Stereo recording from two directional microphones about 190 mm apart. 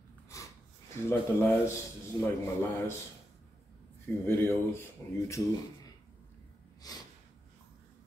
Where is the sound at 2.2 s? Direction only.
20° left (ahead or behind).